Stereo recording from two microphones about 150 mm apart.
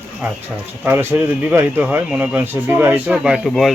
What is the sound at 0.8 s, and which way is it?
Speech, 10° right (ahead or behind).